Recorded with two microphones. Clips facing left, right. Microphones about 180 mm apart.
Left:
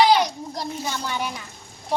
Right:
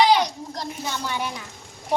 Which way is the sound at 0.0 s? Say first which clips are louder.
Left 1 dB; 5° left (ahead or behind).